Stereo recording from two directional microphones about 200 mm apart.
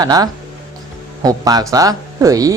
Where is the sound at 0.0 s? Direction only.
20° right (ahead or behind).